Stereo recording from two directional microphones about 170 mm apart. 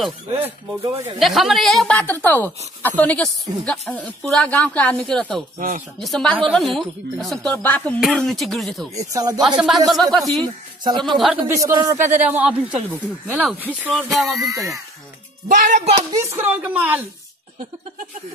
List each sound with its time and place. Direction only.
1.2 s a woman's voice: centre (ahead or behind)
8.9 s speech: 20° right (ahead or behind)
9.4 s speech: centre (ahead or behind)
10.4 s speech: 25° right (ahead or behind)
11.1 s speech: centre (ahead or behind)
11.4 s speech: 20° right (ahead or behind); by 14.5 s centre (ahead or behind)
15.4 s speech: 45° right (ahead or behind)
16.1 s speech: 20° right (ahead or behind)